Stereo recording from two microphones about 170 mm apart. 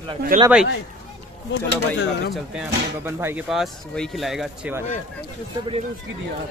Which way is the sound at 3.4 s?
Centre (ahead or behind).